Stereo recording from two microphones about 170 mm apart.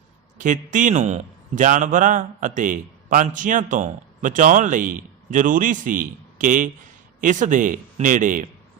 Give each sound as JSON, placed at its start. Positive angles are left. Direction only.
{"t": 0.3, "sound": "a man's voice", "side_deg": -50}